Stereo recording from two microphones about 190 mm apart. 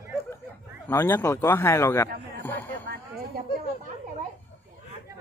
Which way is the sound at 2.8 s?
50° right (ahead or behind).